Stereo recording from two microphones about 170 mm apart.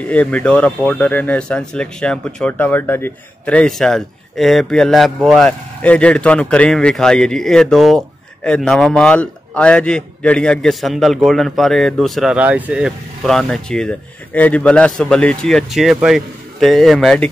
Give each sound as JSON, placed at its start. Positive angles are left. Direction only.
{"t": 0.0, "sound": "a man's voice", "side_deg": 10}